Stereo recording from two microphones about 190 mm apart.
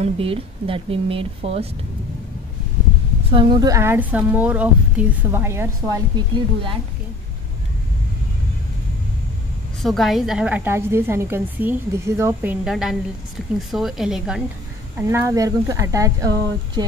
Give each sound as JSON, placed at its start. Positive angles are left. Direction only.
{"t": 0.0, "sound": "a woman's voice", "side_deg": -30}
{"t": 3.3, "sound": "a woman's voice", "side_deg": -25}
{"t": 9.8, "sound": "a woman's voice", "side_deg": 0}
{"t": 15.0, "sound": "a woman's voice", "side_deg": -15}